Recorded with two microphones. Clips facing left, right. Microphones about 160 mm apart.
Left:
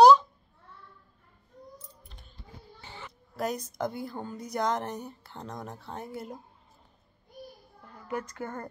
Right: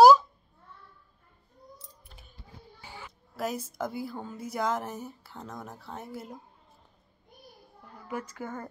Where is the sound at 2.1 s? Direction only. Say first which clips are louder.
Left 1 dB; 5° right (ahead or behind).